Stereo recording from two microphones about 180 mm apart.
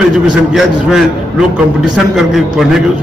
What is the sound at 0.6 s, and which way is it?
Speech, centre (ahead or behind).